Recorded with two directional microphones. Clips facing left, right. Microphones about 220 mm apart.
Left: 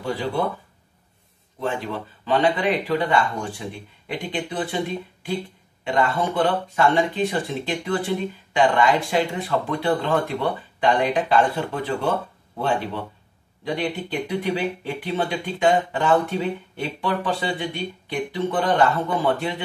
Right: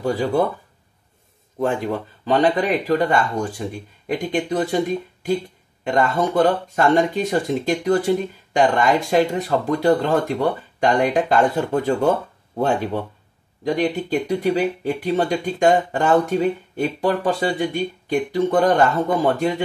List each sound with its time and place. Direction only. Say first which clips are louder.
0.0 s speech: right 5 dB; 45° right (ahead or behind)
1.6 s speech: right 5 dB; 45° right (ahead or behind)
14.2 s speech: right 3 dB; 40° right (ahead or behind)